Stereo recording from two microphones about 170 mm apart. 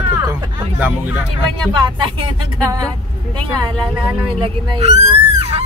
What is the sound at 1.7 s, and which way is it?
Speech, 30° right (ahead or behind).